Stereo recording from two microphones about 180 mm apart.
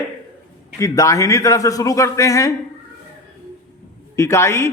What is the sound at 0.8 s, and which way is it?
A man's voice, 15° left (ahead or behind).